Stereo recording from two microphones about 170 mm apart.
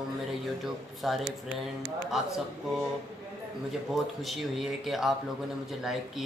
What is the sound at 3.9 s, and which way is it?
Speech, centre (ahead or behind).